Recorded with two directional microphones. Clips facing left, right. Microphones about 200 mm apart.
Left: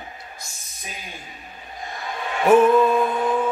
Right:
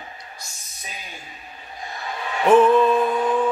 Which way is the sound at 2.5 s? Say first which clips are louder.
Even; 10° left (ahead or behind).